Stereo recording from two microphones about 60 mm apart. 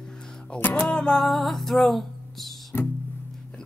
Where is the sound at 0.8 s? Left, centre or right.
Centre.